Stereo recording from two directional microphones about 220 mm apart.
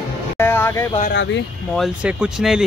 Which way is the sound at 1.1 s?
55° left (ahead or behind).